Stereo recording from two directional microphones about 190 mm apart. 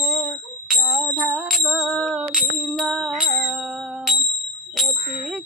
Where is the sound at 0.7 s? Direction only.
10° right (ahead or behind).